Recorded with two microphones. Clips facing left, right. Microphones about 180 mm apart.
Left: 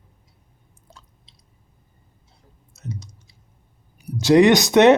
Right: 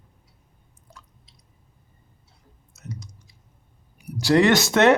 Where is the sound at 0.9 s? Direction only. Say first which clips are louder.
Even; 30° left (ahead or behind).